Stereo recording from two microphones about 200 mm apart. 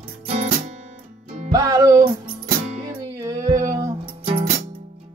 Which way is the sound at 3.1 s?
15° right (ahead or behind).